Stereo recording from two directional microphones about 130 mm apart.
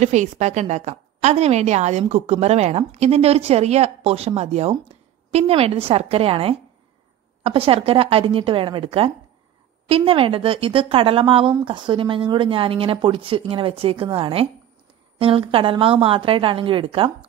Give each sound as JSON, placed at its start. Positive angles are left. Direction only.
{"t": 0.0, "sound": "a woman's voice", "side_deg": -65}